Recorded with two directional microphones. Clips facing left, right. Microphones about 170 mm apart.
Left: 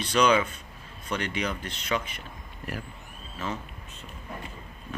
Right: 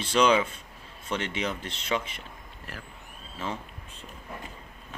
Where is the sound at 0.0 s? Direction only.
25° right (ahead or behind).